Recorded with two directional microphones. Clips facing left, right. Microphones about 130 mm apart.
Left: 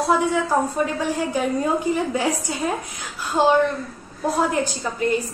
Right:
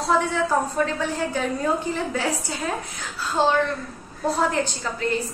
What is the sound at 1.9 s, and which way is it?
Speech, 10° left (ahead or behind).